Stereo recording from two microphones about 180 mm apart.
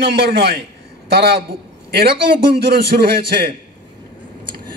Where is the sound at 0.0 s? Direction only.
70° right (ahead or behind).